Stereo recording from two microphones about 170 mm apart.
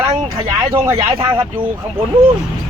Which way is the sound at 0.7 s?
35° right (ahead or behind).